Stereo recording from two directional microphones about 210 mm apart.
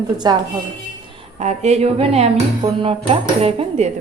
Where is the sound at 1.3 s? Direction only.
30° right (ahead or behind).